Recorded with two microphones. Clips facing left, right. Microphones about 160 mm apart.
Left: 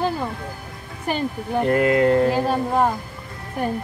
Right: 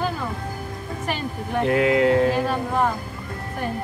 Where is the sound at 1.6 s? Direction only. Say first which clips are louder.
Left 1 dB; centre (ahead or behind).